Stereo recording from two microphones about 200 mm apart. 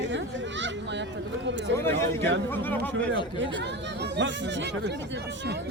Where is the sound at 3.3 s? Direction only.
65° right (ahead or behind).